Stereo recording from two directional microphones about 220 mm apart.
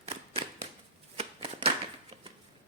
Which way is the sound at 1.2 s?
25° right (ahead or behind).